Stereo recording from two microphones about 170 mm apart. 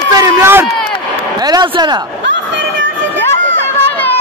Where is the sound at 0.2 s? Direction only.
15° right (ahead or behind).